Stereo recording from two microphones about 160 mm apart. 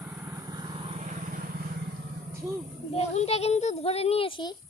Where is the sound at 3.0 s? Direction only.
40° left (ahead or behind).